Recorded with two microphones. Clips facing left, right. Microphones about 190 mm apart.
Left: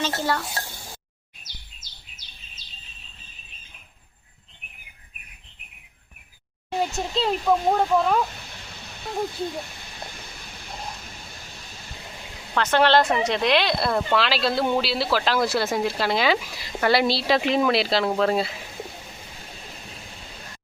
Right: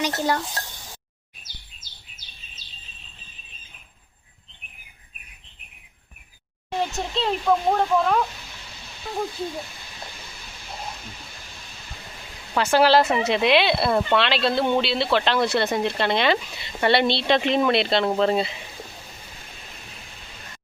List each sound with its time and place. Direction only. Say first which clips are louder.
0.2 s speech: right 3 dB; 15° right (ahead or behind)
6.7 s speech: left 1 dB; centre (ahead or behind)
12.5 s speech: right 1 dB; 10° right (ahead or behind)